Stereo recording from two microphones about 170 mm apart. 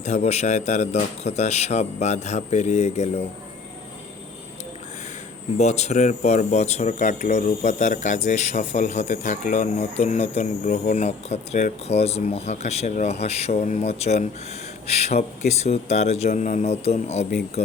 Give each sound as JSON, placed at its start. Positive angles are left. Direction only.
{"t": 0.0, "sound": "speech", "side_deg": 45}
{"t": 5.5, "sound": "speech", "side_deg": 40}